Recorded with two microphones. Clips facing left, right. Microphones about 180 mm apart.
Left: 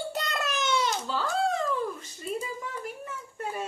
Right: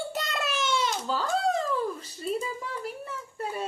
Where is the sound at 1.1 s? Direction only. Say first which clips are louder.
Right 2 dB; 45° right (ahead or behind).